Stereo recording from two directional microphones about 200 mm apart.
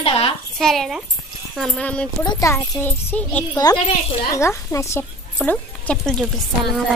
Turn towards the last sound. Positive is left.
turn(degrees=0)  # may be behind; listen again after turning